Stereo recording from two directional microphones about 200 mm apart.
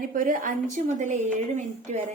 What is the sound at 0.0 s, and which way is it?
A woman's voice, 45° right (ahead or behind).